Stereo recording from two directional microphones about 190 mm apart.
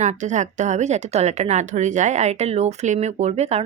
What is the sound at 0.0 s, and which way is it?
Speech, 40° right (ahead or behind).